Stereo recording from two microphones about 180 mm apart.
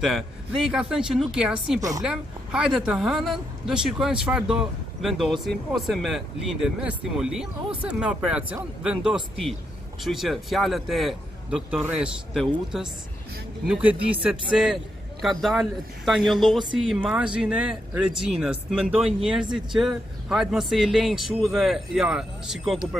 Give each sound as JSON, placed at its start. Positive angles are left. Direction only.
{"t": 0.7, "sound": "speech", "side_deg": -5}
{"t": 1.8, "sound": "a woman's voice", "side_deg": -20}
{"t": 2.0, "sound": "speech", "side_deg": -5}
{"t": 13.7, "sound": "speech", "side_deg": -5}